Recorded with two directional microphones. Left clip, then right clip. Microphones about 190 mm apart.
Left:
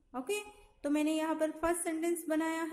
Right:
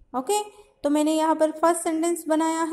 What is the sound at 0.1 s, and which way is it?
A woman's voice, 20° right (ahead or behind).